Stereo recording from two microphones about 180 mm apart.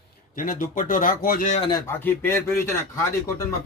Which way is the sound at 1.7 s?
20° left (ahead or behind).